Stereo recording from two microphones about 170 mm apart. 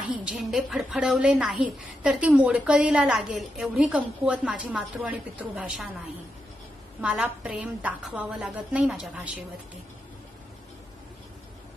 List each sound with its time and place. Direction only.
0.2 s a woman's voice: 5° right (ahead or behind)
7.0 s a woman's voice: 5° right (ahead or behind)